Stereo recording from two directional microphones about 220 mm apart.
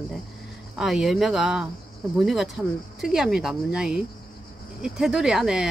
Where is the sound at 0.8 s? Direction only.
Centre (ahead or behind).